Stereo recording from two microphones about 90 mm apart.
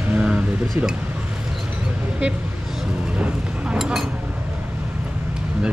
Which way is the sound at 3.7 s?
5° right (ahead or behind).